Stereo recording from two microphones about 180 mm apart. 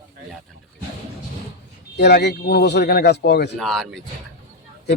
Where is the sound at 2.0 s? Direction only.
65° left (ahead or behind).